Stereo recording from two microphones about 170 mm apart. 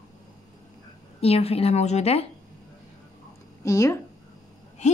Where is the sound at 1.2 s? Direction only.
35° left (ahead or behind).